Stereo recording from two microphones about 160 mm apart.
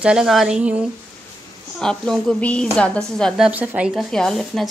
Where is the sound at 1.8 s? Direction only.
5° left (ahead or behind).